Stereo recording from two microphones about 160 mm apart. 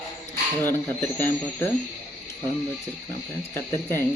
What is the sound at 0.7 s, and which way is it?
Speech, 15° left (ahead or behind).